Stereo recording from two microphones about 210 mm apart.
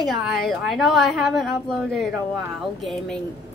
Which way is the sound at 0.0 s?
Centre (ahead or behind).